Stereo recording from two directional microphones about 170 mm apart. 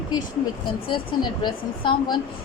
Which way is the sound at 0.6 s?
30° left (ahead or behind).